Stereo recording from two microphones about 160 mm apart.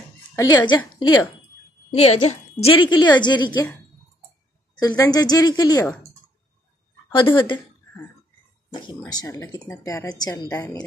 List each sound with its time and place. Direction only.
0.4 s a woman's voice: 25° left (ahead or behind)
1.9 s a woman's voice: 40° left (ahead or behind)
4.7 s a woman's voice: 20° left (ahead or behind)
7.2 s a woman's voice: 30° left (ahead or behind)
9.0 s a woman's voice: 20° left (ahead or behind)